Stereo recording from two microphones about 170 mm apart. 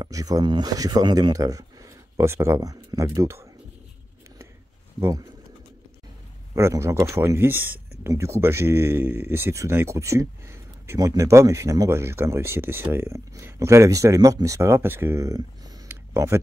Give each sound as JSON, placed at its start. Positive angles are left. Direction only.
{"t": 0.0, "sound": "speech", "side_deg": -20}
{"t": 6.5, "sound": "speech", "side_deg": -15}